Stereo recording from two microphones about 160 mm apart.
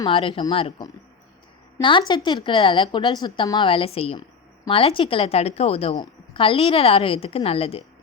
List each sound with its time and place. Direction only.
0.0 s a woman's voice: 35° left (ahead or behind)